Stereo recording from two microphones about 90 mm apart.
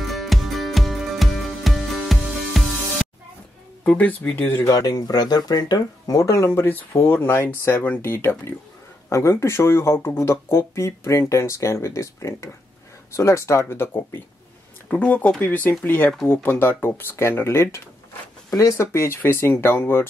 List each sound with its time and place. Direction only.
0.0 s music: centre (ahead or behind)
3.8 s speech: 20° left (ahead or behind)
4.6 s speech: 40° left (ahead or behind)
18.9 s speech: 30° left (ahead or behind)